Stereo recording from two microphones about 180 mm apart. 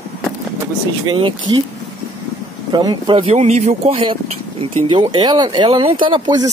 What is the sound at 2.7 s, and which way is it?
Speech, 25° right (ahead or behind).